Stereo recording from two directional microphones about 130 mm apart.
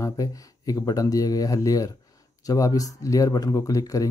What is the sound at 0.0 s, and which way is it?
Speech, 25° left (ahead or behind).